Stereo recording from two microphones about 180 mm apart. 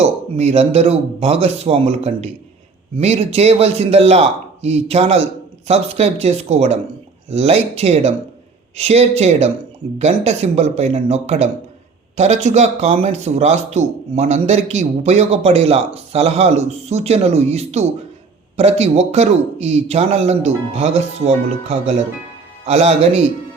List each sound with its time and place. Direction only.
0.0 s speech: 35° right (ahead or behind)